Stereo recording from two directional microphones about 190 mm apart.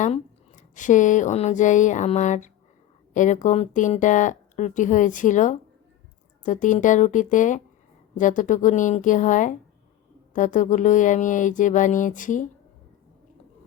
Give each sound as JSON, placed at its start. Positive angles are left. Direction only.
{"t": 0.0, "sound": "speech", "side_deg": 40}